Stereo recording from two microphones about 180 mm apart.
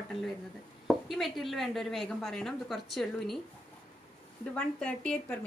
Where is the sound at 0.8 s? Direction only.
Centre (ahead or behind).